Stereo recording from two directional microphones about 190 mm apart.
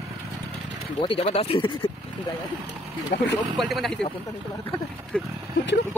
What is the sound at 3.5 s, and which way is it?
Speech, centre (ahead or behind).